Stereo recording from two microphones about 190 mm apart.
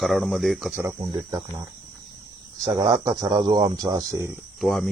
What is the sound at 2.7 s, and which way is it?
Speech, 20° right (ahead or behind).